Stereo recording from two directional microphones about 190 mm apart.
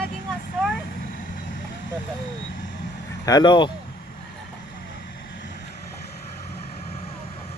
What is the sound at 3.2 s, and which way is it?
Speech, 20° left (ahead or behind).